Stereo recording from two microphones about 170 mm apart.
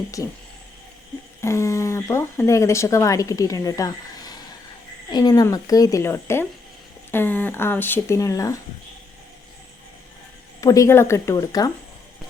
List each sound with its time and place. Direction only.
1.4 s a woman's voice: 15° left (ahead or behind)
10.6 s a woman's voice: 20° left (ahead or behind)